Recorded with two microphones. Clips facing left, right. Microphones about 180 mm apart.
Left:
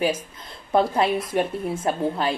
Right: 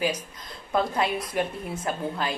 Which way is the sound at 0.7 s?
25° left (ahead or behind).